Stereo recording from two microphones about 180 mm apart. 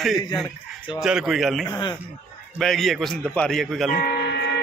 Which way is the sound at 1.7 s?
25° left (ahead or behind).